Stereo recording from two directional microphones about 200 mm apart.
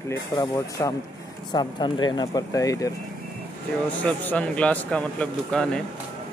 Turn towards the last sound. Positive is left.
turn(degrees=5)  # may be behind; listen again after turning